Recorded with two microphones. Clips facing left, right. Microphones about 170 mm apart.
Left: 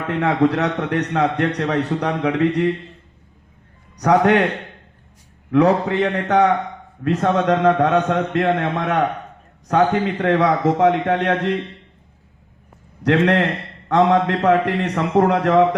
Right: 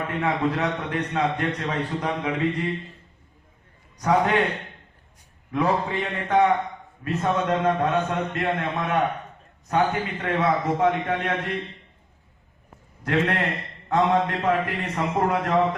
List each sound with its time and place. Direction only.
0.1 s a man's voice: 75° left (ahead or behind)
4.0 s a man's voice: 75° left (ahead or behind)
13.0 s a man's voice: 75° left (ahead or behind)